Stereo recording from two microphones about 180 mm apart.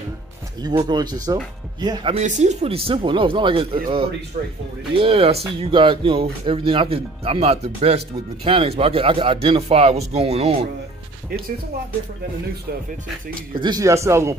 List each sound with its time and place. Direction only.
0.6 s speech: 25° right (ahead or behind)
2.1 s speech: 40° right (ahead or behind)
4.9 s speech: 30° right (ahead or behind)
13.6 s speech: 20° right (ahead or behind)